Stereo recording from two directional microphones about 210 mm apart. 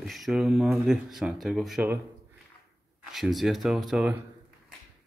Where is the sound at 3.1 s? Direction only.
Centre (ahead or behind).